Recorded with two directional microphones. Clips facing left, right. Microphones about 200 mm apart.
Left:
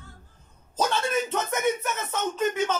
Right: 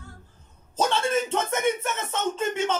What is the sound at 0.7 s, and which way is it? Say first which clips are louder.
Speech: right 2 dB; 25° right (ahead or behind).